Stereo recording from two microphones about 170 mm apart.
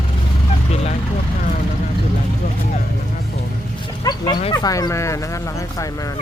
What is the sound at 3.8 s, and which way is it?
Speech, 25° left (ahead or behind).